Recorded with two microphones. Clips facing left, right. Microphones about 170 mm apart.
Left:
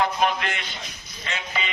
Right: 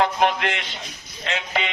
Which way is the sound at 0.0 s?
70° right (ahead or behind).